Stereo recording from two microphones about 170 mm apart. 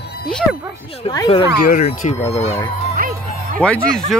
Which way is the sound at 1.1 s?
35° left (ahead or behind).